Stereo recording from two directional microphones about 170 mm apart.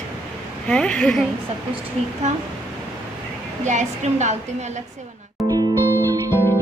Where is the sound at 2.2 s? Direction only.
40° right (ahead or behind).